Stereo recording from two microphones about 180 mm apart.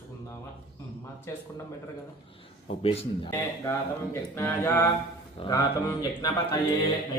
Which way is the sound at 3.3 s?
15° left (ahead or behind).